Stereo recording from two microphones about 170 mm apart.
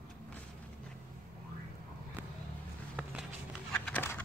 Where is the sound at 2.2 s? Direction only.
10° right (ahead or behind).